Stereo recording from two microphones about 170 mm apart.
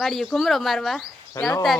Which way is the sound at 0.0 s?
Centre (ahead or behind).